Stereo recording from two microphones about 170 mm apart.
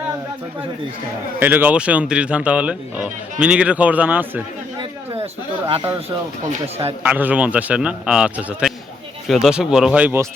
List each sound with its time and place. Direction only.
1.4 s speech: 10° right (ahead or behind)
4.8 s a sound: 30° right (ahead or behind)
7.0 s speech: 10° right (ahead or behind)